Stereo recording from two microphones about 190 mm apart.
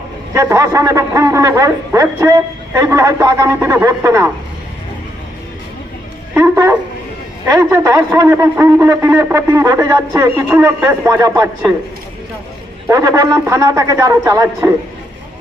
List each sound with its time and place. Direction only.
0.3 s a man's voice: 15° right (ahead or behind)
6.3 s a man's voice: 10° right (ahead or behind)
12.9 s a man's voice: 15° right (ahead or behind)